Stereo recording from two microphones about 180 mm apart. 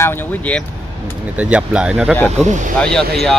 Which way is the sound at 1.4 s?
5° right (ahead or behind).